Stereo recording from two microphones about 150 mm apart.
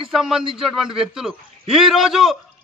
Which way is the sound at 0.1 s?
5° right (ahead or behind).